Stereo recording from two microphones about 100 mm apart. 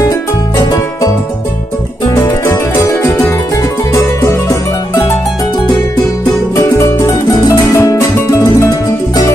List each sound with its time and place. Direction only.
0.6 s music: 35° left (ahead or behind)
2.2 s music: 30° left (ahead or behind)
6.5 s music: 30° left (ahead or behind)